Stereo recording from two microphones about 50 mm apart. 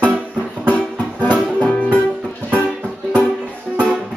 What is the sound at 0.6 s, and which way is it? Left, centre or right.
Music, left.